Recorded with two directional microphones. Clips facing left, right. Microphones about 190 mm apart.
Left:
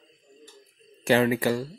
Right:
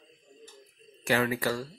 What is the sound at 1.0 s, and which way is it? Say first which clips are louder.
Speech: left 6 dB; 25° left (ahead or behind).